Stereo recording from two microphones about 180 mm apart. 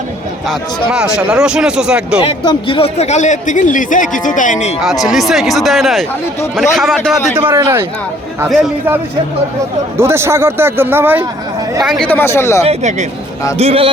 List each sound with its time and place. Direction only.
0.4 s speech: 5° right (ahead or behind)
2.2 s speech: 25° left (ahead or behind); by 4.7 s 45° left (ahead or behind)
4.8 s speech: centre (ahead or behind)
7.3 s a man's voice: 15° right (ahead or behind)
10.0 s a man's voice: 15° right (ahead or behind)
11.8 s speech: centre (ahead or behind)
12.6 s speech: 40° right (ahead or behind)